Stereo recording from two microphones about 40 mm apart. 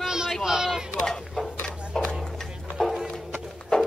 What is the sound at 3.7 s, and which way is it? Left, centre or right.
Horse, left.